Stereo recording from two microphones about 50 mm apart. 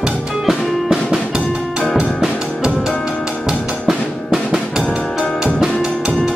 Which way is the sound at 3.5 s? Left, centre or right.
Centre.